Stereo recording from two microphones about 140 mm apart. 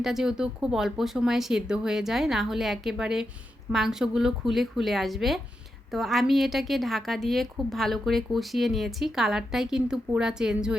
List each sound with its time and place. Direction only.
0.0 s a woman's voice: 5° right (ahead or behind)